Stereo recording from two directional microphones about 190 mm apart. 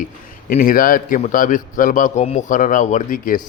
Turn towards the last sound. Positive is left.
turn(degrees=45)  # may be behind; listen again after turning